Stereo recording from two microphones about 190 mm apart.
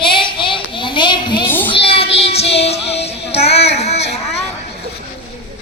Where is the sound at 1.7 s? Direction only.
30° left (ahead or behind).